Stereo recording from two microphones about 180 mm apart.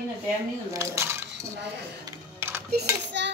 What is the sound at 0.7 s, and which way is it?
Cutlery, 15° right (ahead or behind).